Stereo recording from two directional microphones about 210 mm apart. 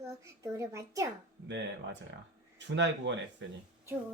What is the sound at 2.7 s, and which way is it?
Speech, 60° right (ahead or behind).